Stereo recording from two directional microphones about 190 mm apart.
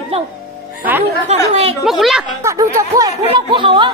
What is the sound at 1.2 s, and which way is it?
Speech, 35° right (ahead or behind).